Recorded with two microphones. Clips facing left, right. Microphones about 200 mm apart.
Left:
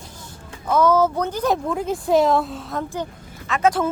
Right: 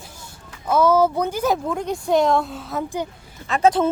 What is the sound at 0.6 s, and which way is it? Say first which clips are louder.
Speech: even; 10° right (ahead or behind).